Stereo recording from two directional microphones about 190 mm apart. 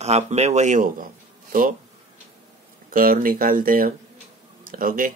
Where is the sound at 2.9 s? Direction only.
50° right (ahead or behind).